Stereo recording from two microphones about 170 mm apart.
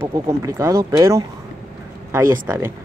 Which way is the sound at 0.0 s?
20° right (ahead or behind).